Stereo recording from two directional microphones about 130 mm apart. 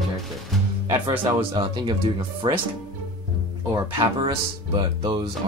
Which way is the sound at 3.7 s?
40° right (ahead or behind).